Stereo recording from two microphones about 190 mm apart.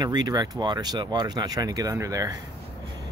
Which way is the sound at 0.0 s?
20° right (ahead or behind).